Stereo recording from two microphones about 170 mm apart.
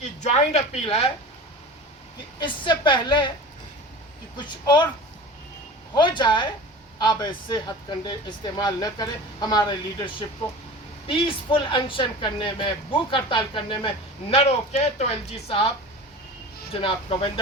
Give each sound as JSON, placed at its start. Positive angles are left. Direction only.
{"t": 0.0, "sound": "speech", "side_deg": 40}
{"t": 2.4, "sound": "speech", "side_deg": 30}
{"t": 4.4, "sound": "speech", "side_deg": 25}
{"t": 5.9, "sound": "speech", "side_deg": 25}
{"t": 11.1, "sound": "speech", "side_deg": 30}
{"t": 16.8, "sound": "speech", "side_deg": 30}